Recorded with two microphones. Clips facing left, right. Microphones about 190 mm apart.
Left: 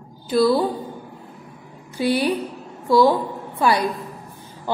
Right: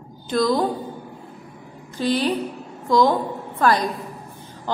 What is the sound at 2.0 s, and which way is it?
A woman's voice, 10° left (ahead or behind).